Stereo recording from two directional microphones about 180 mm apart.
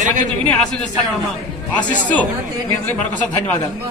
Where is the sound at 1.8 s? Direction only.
10° left (ahead or behind).